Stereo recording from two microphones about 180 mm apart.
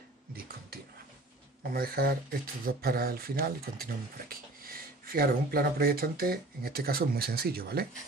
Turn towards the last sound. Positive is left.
turn(degrees=-60)  # may be behind; listen again after turning